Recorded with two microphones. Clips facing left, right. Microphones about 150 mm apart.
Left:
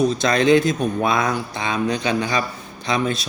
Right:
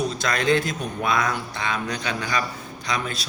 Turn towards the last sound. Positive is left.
turn(degrees=25)  # may be behind; listen again after turning